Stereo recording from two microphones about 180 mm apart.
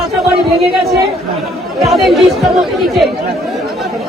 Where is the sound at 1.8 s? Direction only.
Centre (ahead or behind).